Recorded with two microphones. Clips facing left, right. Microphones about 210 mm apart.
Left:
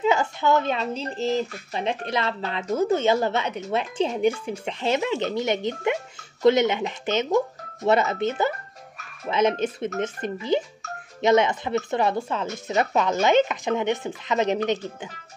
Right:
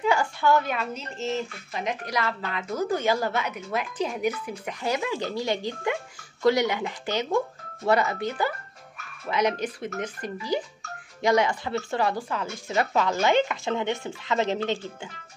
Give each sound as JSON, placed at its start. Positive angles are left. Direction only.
{"t": 0.0, "sound": "speech", "side_deg": 20}